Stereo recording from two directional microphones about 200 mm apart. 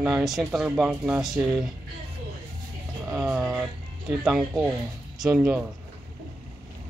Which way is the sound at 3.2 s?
Centre (ahead or behind).